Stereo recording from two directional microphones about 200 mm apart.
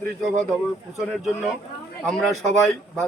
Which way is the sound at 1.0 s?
Centre (ahead or behind).